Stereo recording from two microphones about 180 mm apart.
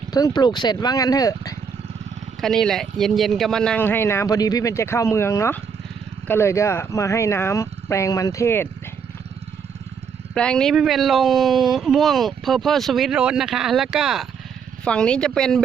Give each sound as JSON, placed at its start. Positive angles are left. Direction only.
{"t": 0.1, "sound": "speech", "side_deg": 25}
{"t": 2.4, "sound": "speech", "side_deg": 0}
{"t": 10.3, "sound": "speech", "side_deg": 5}